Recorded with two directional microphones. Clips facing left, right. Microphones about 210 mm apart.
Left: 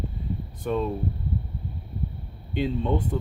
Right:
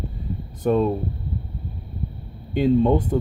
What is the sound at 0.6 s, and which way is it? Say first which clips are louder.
Speech: right 7 dB; 45° right (ahead or behind).